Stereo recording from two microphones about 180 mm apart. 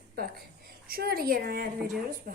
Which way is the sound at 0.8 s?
55° right (ahead or behind).